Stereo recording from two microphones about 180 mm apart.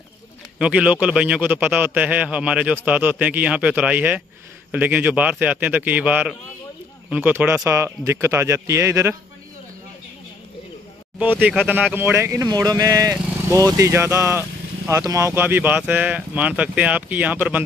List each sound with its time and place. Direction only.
0.6 s a man's voice: 5° right (ahead or behind)
11.1 s a man's voice: 10° right (ahead or behind)